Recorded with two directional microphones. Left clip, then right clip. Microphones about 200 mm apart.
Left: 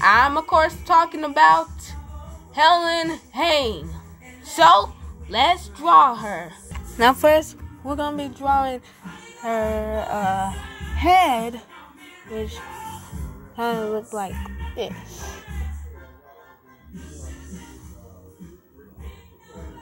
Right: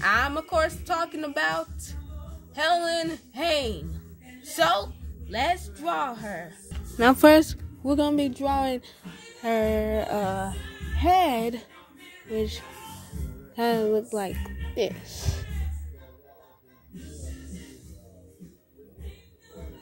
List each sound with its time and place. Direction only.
0.0 s a woman's voice: 10° right (ahead or behind)
6.7 s music: 35° right (ahead or behind)
7.2 s speech: 65° right (ahead or behind)
13.6 s speech: 70° right (ahead or behind)